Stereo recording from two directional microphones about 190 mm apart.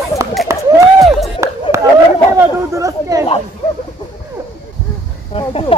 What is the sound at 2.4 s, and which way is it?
Chatter, 15° right (ahead or behind).